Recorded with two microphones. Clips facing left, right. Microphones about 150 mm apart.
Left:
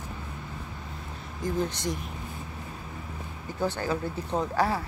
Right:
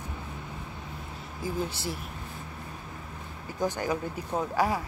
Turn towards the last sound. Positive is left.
turn(degrees=-10)  # may be behind; listen again after turning